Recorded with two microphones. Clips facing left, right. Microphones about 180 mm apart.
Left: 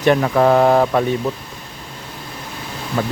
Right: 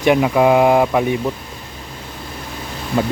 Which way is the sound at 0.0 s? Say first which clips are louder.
Right 1 dB; 10° right (ahead or behind).